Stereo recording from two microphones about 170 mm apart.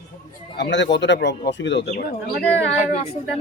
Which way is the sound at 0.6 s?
90° left.